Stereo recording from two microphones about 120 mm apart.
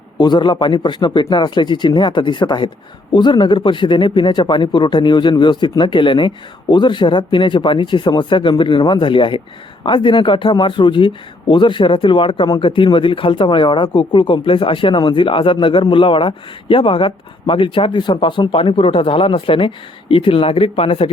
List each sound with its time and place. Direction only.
0.2 s speech: 35° left (ahead or behind)